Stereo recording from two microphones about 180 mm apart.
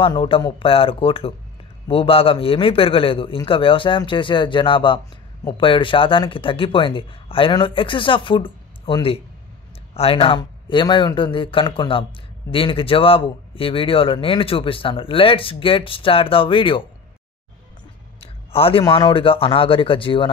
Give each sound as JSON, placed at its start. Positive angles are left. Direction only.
{"t": 0.0, "sound": "speech", "side_deg": 30}
{"t": 18.2, "sound": "speech", "side_deg": 30}